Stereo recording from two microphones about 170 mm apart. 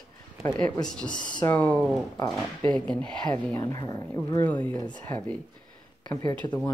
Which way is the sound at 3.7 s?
20° left (ahead or behind).